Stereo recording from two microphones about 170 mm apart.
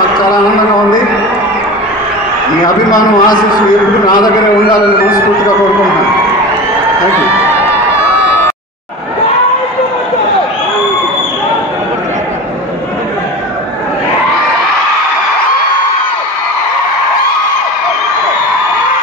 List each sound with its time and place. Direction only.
2.6 s a man's voice: 20° left (ahead or behind)